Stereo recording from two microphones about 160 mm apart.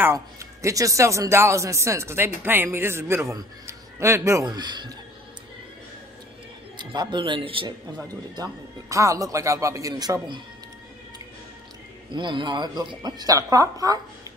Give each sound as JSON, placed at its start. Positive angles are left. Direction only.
{"t": 0.0, "sound": "speech", "side_deg": -20}
{"t": 6.8, "sound": "speech", "side_deg": -30}
{"t": 8.4, "sound": "speech", "side_deg": -20}
{"t": 12.1, "sound": "speech", "side_deg": -30}